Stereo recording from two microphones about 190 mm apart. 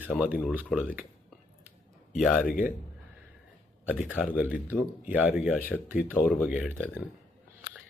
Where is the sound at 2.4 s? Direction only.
50° left (ahead or behind).